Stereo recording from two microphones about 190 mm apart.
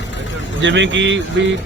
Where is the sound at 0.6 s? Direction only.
75° right (ahead or behind).